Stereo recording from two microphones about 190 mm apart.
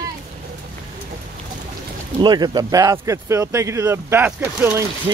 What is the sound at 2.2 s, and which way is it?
Speech, 20° right (ahead or behind).